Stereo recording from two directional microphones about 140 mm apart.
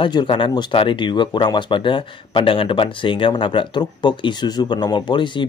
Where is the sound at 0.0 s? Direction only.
35° left (ahead or behind).